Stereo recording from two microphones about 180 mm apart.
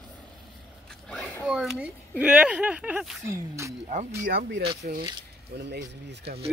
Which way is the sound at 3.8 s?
40° right (ahead or behind).